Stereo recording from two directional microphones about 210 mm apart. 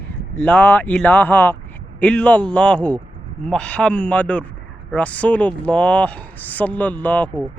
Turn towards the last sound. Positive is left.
turn(degrees=10)  # may be behind; listen again after turning